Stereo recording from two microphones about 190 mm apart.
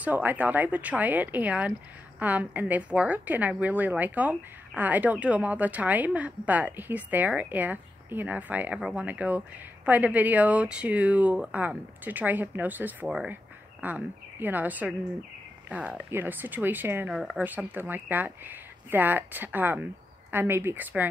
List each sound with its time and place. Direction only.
0.0 s a woman's voice: 10° right (ahead or behind)